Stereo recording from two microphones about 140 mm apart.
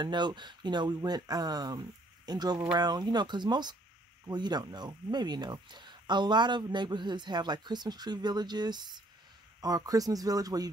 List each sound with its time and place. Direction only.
0.0 s speech: 35° right (ahead or behind)